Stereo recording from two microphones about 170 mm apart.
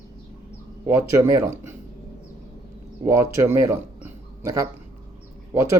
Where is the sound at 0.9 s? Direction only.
15° right (ahead or behind).